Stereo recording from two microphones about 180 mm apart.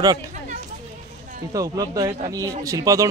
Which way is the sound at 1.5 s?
20° right (ahead or behind).